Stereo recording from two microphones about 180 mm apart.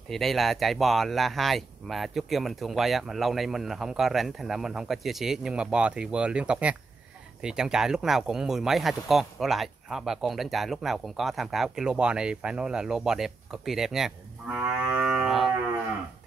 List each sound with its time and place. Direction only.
0.1 s speech: centre (ahead or behind)